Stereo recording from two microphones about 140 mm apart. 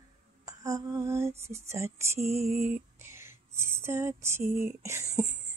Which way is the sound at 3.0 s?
20° right (ahead or behind).